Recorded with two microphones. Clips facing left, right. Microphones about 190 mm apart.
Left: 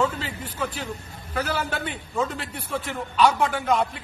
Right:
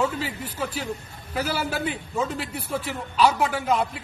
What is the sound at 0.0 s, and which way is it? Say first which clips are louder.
A man's voice: even; 5° right (ahead or behind).